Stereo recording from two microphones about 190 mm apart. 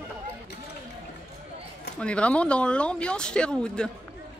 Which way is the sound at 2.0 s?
5° left (ahead or behind).